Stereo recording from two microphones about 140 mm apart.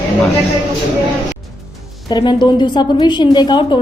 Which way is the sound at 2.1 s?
30° left (ahead or behind).